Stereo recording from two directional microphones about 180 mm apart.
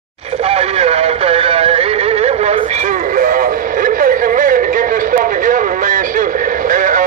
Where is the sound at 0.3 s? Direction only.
35° right (ahead or behind).